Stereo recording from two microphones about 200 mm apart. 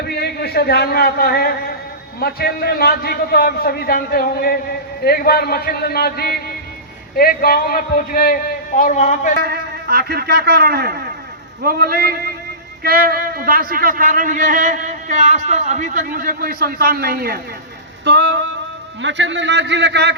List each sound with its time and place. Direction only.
0.2 s a man's voice: 55° left (ahead or behind)
9.4 s a man's voice: 50° right (ahead or behind)
18.0 s a man's voice: 60° right (ahead or behind)